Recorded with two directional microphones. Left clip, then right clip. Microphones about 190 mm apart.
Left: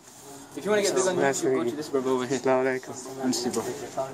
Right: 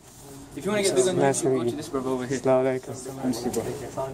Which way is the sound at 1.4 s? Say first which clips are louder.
Right 1 dB; centre (ahead or behind).